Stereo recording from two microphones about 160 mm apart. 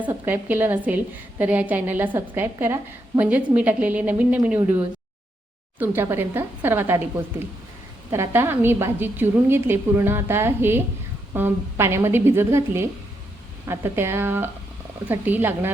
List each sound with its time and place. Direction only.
0.0 s a woman's voice: 15° right (ahead or behind)
5.8 s a woman's voice: 15° right (ahead or behind)
8.1 s a woman's voice: 15° right (ahead or behind)